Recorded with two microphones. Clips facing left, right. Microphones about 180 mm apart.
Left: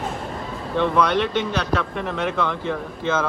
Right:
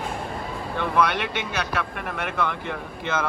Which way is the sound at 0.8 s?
10° right (ahead or behind).